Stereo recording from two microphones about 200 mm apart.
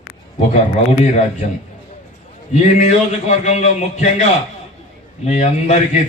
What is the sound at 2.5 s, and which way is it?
A man's voice, 35° left (ahead or behind).